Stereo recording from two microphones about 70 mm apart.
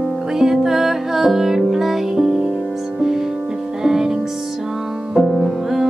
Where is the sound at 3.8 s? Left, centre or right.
Centre.